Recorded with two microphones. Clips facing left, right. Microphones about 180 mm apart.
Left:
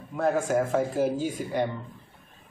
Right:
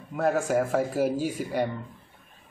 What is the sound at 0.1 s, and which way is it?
Speech, 10° right (ahead or behind).